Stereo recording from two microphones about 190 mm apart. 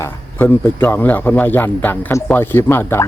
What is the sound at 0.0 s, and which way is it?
A man's voice, 10° left (ahead or behind).